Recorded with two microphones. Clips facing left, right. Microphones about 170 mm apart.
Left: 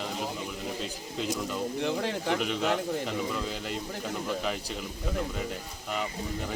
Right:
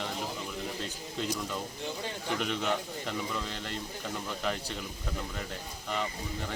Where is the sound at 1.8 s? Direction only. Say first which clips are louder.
Left 8 dB; 75° left (ahead or behind).